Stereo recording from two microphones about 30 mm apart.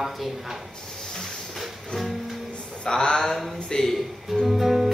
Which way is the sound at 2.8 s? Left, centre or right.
Left.